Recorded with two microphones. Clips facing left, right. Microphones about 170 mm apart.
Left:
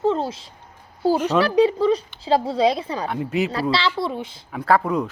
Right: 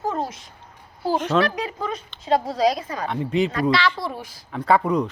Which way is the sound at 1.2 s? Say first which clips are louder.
Left 1 dB; 10° left (ahead or behind).